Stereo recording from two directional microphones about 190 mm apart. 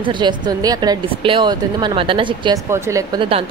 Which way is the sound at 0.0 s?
25° right (ahead or behind).